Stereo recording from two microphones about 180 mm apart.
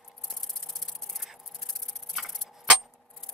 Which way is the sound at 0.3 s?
5° left (ahead or behind).